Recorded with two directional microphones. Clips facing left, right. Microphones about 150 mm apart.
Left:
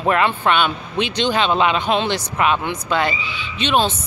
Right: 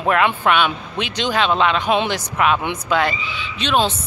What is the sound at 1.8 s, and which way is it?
Speech, 10° right (ahead or behind).